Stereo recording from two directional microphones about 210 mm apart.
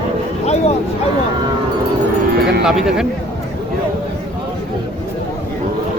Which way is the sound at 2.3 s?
50° right (ahead or behind).